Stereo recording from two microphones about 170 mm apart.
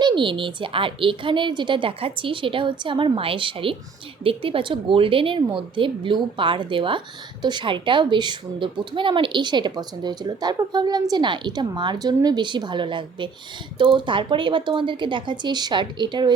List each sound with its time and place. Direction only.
0.0 s a woman's voice: 30° right (ahead or behind)